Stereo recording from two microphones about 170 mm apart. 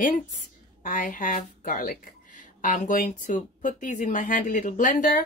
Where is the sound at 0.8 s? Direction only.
50° left (ahead or behind).